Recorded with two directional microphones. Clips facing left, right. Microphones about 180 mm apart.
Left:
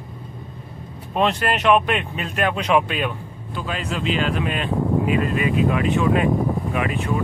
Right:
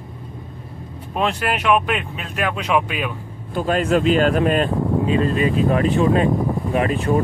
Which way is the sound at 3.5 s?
45° right (ahead or behind).